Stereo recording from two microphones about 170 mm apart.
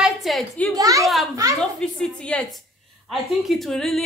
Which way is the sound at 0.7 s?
20° right (ahead or behind).